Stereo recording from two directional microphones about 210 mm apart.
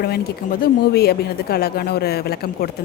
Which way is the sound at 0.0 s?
50° left (ahead or behind).